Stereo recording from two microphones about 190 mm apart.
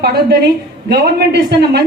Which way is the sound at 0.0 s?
60° right (ahead or behind).